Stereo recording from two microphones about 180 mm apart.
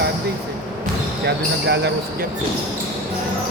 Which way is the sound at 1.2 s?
70° right (ahead or behind).